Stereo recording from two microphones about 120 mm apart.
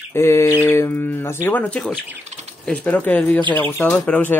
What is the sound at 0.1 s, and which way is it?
Speech, 20° left (ahead or behind).